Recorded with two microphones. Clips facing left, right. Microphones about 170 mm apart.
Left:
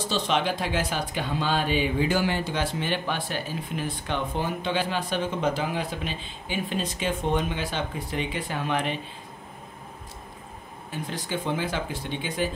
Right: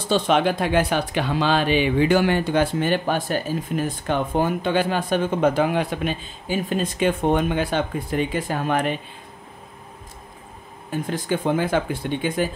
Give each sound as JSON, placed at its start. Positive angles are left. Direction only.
{"t": 0.1, "sound": "speech", "side_deg": -55}
{"t": 6.2, "sound": "speech", "side_deg": -45}
{"t": 10.9, "sound": "speech", "side_deg": -50}